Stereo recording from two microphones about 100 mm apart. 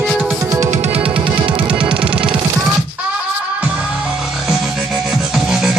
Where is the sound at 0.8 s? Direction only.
90° right.